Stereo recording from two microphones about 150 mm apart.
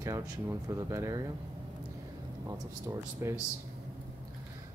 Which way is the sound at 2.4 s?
20° right (ahead or behind).